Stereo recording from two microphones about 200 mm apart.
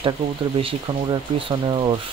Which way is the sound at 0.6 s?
25° right (ahead or behind).